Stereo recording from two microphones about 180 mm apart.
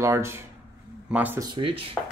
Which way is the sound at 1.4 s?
25° right (ahead or behind).